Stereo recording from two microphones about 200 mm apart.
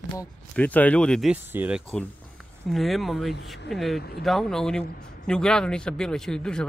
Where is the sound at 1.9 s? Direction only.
5° left (ahead or behind).